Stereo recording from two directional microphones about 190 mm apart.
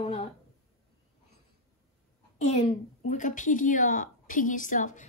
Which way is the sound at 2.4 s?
40° left (ahead or behind).